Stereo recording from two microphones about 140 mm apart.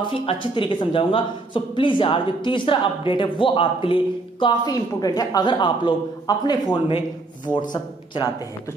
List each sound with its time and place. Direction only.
0.0 s speech: 40° left (ahead or behind)